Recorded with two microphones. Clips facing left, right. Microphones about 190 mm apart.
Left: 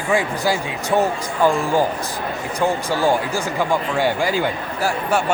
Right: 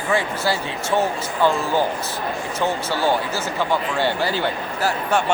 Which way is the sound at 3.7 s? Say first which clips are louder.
Left 2 dB; 15° left (ahead or behind).